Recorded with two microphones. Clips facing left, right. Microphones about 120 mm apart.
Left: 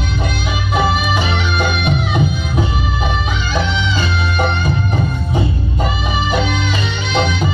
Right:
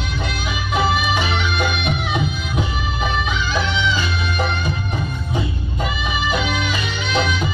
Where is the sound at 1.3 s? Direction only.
40° left (ahead or behind).